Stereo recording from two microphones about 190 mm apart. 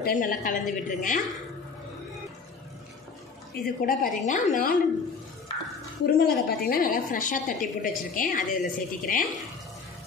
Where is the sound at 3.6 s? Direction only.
50° left (ahead or behind).